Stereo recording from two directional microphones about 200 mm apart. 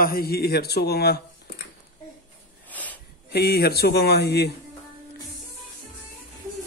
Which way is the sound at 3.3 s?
50° left (ahead or behind).